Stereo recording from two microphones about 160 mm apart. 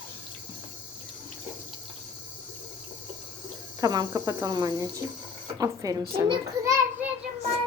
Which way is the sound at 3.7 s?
25° right (ahead or behind).